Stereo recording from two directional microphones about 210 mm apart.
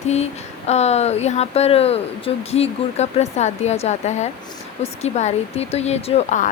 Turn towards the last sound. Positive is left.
turn(degrees=35)  # may be behind; listen again after turning